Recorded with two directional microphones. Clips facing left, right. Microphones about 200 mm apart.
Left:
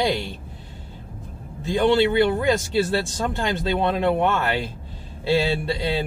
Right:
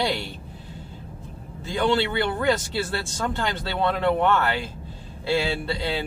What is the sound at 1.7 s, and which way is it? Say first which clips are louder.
Speech: left 5 dB; 15° left (ahead or behind).